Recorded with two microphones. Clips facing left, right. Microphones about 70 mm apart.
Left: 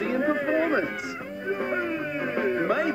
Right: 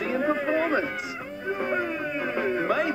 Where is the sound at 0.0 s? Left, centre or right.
Left.